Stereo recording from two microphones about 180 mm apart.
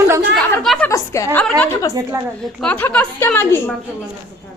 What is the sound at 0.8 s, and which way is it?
A woman's voice, 15° left (ahead or behind).